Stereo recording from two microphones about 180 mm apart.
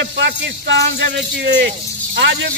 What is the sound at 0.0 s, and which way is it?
Speech, 70° right (ahead or behind).